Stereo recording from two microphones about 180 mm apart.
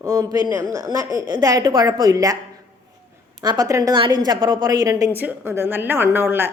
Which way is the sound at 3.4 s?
20° right (ahead or behind).